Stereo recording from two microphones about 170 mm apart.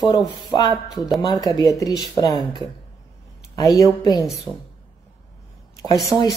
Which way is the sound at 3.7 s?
20° left (ahead or behind).